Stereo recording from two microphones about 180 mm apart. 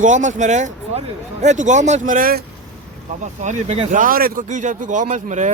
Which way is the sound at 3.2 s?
40° right (ahead or behind).